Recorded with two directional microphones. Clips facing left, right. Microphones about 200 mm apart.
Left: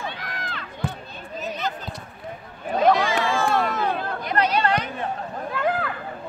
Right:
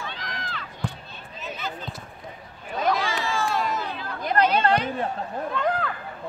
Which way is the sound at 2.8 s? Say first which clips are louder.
Left 6 dB; 55° left (ahead or behind).